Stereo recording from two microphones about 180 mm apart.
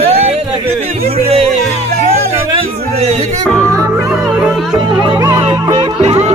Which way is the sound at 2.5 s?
30° right (ahead or behind).